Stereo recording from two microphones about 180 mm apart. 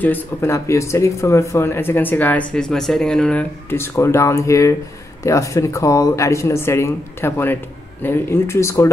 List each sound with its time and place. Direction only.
0.0 s speech: 10° left (ahead or behind)